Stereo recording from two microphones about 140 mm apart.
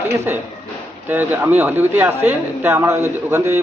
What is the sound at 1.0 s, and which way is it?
Speech, 15° right (ahead or behind).